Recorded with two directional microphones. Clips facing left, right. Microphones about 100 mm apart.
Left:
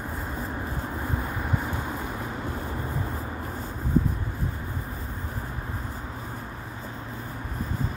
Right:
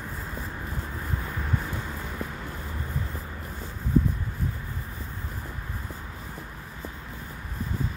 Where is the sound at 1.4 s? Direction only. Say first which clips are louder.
Left 2 dB; 15° left (ahead or behind).